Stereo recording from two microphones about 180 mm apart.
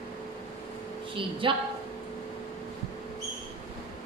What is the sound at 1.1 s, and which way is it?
Speech, 30° right (ahead or behind).